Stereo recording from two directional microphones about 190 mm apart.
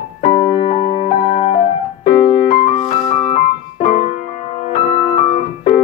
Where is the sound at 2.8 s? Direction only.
30° left (ahead or behind).